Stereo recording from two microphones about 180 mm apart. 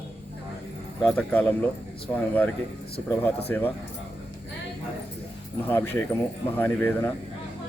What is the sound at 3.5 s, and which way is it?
Speech, 10° left (ahead or behind).